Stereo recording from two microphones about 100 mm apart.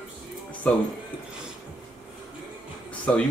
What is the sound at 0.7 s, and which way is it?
Speech, 15° left (ahead or behind).